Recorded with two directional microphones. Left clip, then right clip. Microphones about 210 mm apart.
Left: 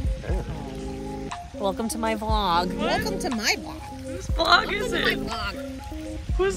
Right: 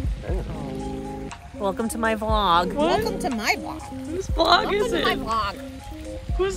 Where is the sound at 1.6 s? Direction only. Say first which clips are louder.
Right 2 dB; 5° right (ahead or behind).